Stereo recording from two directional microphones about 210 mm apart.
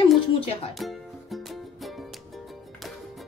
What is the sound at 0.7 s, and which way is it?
Music, centre (ahead or behind).